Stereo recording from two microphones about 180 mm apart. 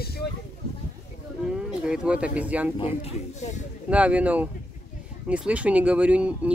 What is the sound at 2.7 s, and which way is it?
Speech, 30° left (ahead or behind).